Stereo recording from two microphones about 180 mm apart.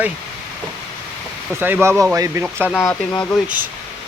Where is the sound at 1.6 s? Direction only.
10° right (ahead or behind).